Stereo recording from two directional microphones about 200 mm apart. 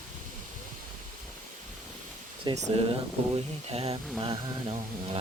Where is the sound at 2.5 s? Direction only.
25° right (ahead or behind).